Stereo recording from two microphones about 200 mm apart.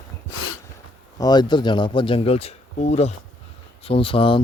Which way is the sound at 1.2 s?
20° left (ahead or behind).